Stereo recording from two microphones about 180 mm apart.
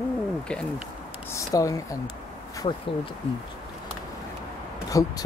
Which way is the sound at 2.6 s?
30° left (ahead or behind).